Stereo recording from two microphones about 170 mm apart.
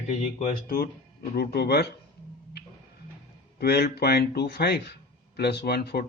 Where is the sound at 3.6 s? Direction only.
70° left (ahead or behind).